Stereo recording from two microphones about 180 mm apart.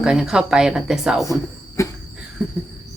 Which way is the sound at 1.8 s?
15° left (ahead or behind).